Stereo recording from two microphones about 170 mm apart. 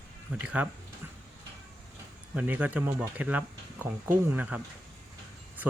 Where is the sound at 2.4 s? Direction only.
10° right (ahead or behind).